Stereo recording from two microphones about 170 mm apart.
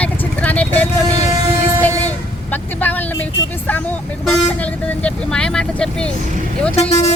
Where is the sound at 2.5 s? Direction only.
10° left (ahead or behind).